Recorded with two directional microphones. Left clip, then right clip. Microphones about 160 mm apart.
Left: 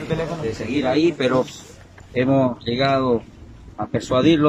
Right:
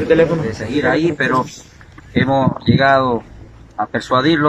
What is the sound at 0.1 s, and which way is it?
Speech, 75° right (ahead or behind).